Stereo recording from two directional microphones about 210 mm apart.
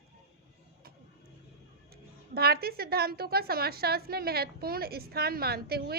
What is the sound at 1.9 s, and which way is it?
A woman's voice, 50° right (ahead or behind).